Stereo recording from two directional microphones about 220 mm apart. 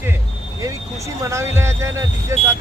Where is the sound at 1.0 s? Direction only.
15° right (ahead or behind).